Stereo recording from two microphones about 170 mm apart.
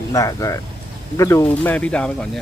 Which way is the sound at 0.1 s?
20° left (ahead or behind).